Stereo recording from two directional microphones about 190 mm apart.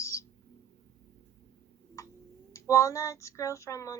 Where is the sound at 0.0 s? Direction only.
15° left (ahead or behind).